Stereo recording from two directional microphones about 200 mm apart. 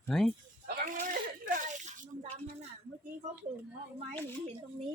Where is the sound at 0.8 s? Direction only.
40° right (ahead or behind).